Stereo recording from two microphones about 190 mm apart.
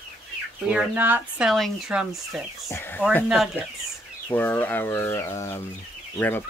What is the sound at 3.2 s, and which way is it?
Speech, centre (ahead or behind).